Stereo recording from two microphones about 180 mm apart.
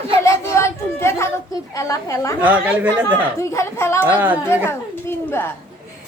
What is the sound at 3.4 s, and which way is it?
Speech, 15° left (ahead or behind).